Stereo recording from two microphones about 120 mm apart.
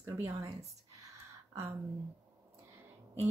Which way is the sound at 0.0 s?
25° right (ahead or behind).